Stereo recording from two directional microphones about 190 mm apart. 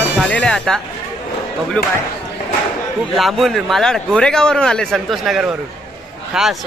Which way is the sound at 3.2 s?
Centre (ahead or behind).